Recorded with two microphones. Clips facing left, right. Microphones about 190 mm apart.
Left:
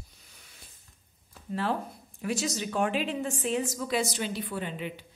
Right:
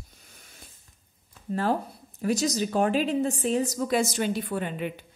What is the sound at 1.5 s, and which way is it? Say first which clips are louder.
Speech: right 4 dB; 40° right (ahead or behind).